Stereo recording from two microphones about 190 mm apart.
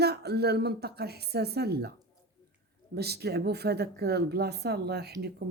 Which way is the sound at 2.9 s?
60° right (ahead or behind).